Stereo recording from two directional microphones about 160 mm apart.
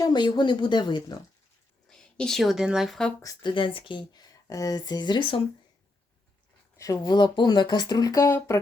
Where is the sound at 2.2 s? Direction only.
Centre (ahead or behind).